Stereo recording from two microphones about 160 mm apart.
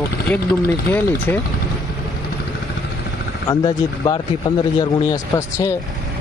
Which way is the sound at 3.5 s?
25° left (ahead or behind).